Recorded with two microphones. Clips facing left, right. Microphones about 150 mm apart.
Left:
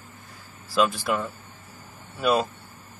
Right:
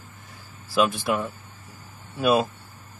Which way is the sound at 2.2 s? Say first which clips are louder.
Right 2 dB; 10° right (ahead or behind).